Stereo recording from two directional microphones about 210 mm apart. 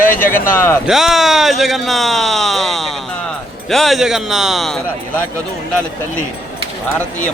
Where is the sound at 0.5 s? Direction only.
10° left (ahead or behind).